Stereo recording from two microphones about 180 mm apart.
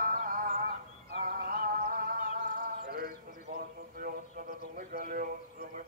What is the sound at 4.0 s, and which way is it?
Horse, 50° right (ahead or behind).